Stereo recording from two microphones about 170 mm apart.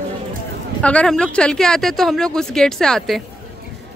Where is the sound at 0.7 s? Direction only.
5° left (ahead or behind).